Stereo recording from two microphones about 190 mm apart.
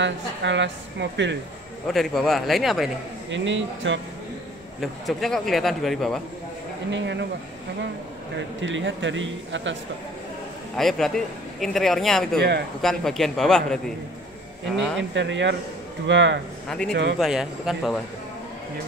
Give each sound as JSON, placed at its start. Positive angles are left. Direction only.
{"t": 0.0, "sound": "speech", "side_deg": -70}
{"t": 1.9, "sound": "a man's voice", "side_deg": 0}
{"t": 3.3, "sound": "speech", "side_deg": -75}
{"t": 4.7, "sound": "a man's voice", "side_deg": 0}
{"t": 6.9, "sound": "speech", "side_deg": -70}
{"t": 8.5, "sound": "speech", "side_deg": -75}
{"t": 10.8, "sound": "a man's voice", "side_deg": 0}
{"t": 12.4, "sound": "speech", "side_deg": -60}
{"t": 12.8, "sound": "a man's voice", "side_deg": 0}
{"t": 15.0, "sound": "speech", "side_deg": -70}
{"t": 16.6, "sound": "a man's voice", "side_deg": 5}